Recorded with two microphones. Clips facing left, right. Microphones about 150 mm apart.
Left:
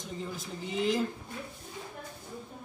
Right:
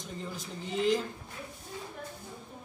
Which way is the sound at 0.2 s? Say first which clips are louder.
Left 2 dB; centre (ahead or behind).